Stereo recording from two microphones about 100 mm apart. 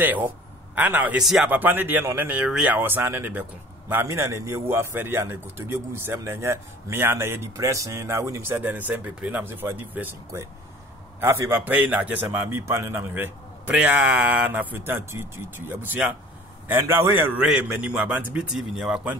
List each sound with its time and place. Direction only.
0.0 s a man's voice: 15° right (ahead or behind)
1.2 s speech: 5° right (ahead or behind)
1.5 s a man's voice: 20° right (ahead or behind)
17.4 s speech: 10° right (ahead or behind)